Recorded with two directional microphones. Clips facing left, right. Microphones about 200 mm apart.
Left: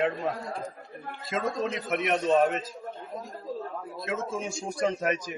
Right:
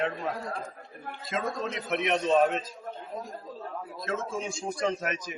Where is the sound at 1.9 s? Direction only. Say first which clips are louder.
Even; 5° left (ahead or behind).